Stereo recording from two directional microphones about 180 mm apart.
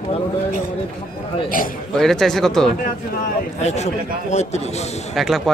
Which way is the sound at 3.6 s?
40° left (ahead or behind).